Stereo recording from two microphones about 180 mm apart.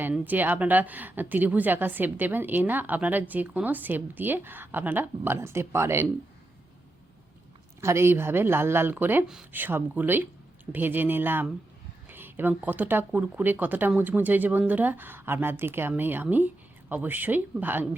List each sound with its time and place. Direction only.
0.0 s speech: 10° right (ahead or behind)
7.8 s speech: 15° right (ahead or behind)